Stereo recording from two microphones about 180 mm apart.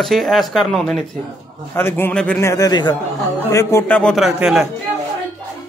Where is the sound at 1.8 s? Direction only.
10° left (ahead or behind).